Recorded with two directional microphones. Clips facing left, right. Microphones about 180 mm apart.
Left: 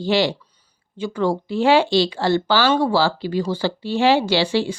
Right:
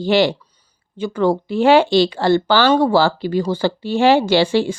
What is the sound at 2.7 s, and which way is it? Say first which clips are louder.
Speech: right 5 dB; 45° right (ahead or behind).